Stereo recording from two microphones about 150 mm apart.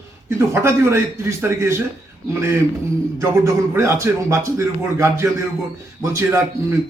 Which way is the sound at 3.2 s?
20° right (ahead or behind).